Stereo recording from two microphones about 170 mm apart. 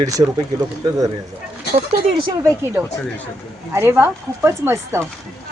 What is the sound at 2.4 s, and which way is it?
Speech, 15° right (ahead or behind).